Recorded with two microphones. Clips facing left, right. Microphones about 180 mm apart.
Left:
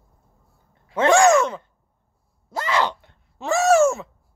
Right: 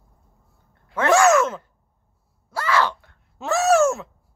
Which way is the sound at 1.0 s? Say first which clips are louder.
Left 3 dB; 20° left (ahead or behind).